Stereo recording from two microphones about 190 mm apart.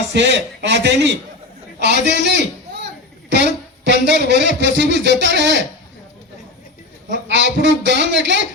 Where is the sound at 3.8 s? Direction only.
65° right (ahead or behind).